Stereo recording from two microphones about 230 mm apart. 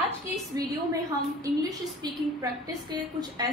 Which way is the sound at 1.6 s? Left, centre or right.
Centre.